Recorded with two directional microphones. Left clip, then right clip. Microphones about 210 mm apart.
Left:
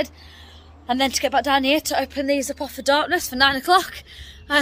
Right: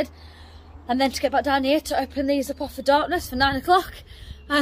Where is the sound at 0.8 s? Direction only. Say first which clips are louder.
Left 1 dB; 5° left (ahead or behind).